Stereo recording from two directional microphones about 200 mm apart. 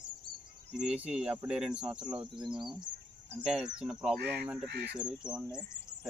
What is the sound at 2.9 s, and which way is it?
Speech, 60° right (ahead or behind).